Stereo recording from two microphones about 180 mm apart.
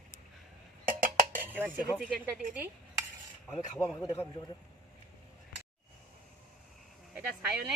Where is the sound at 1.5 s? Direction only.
10° right (ahead or behind).